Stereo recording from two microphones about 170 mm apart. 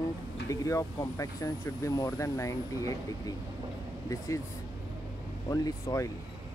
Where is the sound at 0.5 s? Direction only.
20° left (ahead or behind).